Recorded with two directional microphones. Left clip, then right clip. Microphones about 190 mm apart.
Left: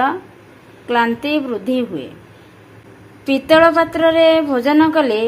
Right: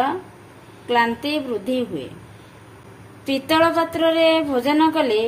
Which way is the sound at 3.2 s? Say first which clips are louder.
Left 7 dB; 15° left (ahead or behind).